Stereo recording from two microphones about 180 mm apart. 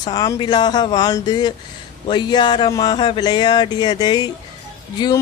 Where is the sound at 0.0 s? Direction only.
20° left (ahead or behind).